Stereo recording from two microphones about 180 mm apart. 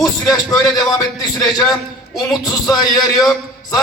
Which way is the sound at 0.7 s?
20° left (ahead or behind).